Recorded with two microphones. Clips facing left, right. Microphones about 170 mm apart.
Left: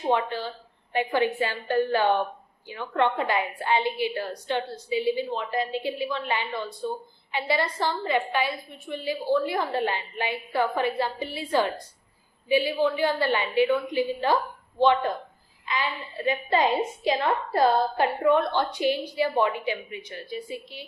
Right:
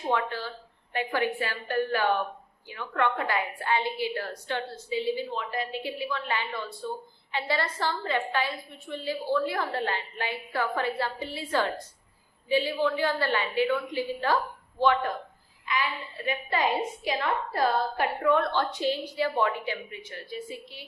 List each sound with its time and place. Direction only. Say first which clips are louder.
0.1 s a woman's voice: left 3 dB; 20° left (ahead or behind)
5.3 s a woman's voice: left 4 dB; 25° left (ahead or behind)
15.6 s a woman's voice: left 1 dB; 25° left (ahead or behind)